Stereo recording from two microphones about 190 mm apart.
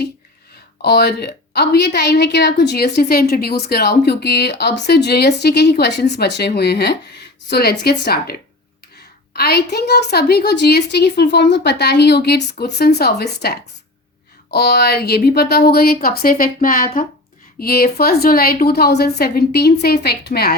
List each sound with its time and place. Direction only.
0.8 s a woman's voice: 60° left (ahead or behind)